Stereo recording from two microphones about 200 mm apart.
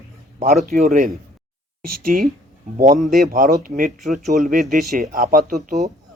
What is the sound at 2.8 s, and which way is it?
Speech, 40° right (ahead or behind).